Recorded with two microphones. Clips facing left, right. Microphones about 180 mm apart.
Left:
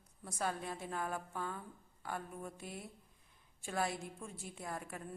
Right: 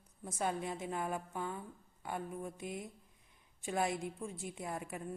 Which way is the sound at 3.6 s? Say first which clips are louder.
Right 3 dB; 20° right (ahead or behind).